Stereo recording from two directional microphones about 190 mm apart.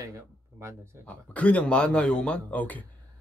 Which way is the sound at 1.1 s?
5° left (ahead or behind).